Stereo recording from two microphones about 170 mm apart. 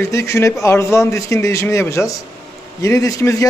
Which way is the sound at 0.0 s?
15° left (ahead or behind).